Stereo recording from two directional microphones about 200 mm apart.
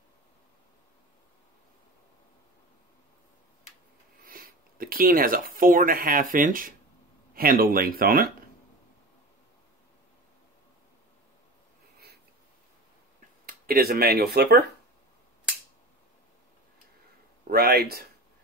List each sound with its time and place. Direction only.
4.2 s speech: 45° right (ahead or behind)
13.5 s speech: 50° right (ahead or behind)
17.5 s speech: 50° right (ahead or behind)